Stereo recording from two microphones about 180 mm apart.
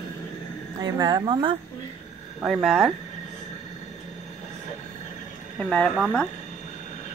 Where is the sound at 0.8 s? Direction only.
25° right (ahead or behind).